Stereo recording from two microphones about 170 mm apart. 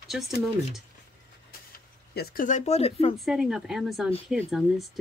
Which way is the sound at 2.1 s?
60° left (ahead or behind).